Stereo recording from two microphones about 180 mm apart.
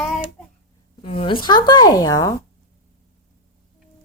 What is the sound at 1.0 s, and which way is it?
Speech, 30° left (ahead or behind).